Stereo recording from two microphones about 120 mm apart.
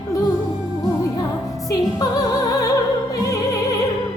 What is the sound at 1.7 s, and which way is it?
Music, 30° left (ahead or behind).